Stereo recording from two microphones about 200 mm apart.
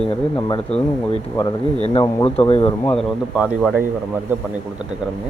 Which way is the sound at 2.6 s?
10° left (ahead or behind).